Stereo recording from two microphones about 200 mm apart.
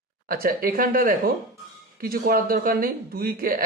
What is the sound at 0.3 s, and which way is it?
Speech, 45° right (ahead or behind).